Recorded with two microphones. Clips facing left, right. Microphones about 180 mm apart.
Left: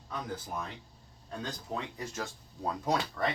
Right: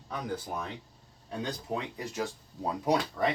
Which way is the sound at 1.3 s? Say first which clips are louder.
Right 4 dB; 15° right (ahead or behind).